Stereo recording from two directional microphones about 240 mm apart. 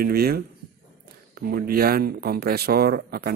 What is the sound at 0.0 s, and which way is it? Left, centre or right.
Speech, right.